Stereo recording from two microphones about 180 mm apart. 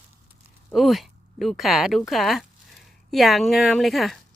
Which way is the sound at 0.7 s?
Centre (ahead or behind).